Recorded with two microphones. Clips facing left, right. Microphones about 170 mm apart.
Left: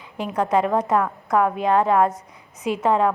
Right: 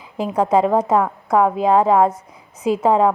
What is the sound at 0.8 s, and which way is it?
A woman's voice, 25° right (ahead or behind).